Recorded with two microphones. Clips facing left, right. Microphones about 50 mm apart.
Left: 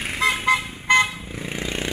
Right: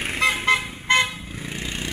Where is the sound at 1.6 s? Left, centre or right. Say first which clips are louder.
Left 4 dB; left.